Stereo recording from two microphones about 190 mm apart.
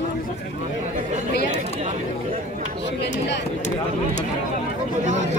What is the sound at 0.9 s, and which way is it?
Speech, 40° right (ahead or behind).